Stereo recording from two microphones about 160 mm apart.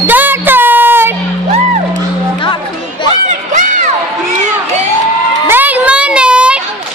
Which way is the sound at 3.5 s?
50° right (ahead or behind).